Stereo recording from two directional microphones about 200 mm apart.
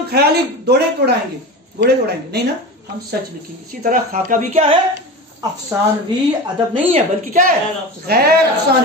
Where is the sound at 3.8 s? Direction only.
40° right (ahead or behind).